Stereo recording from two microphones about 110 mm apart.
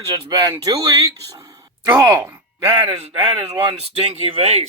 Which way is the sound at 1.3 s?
30° right (ahead or behind).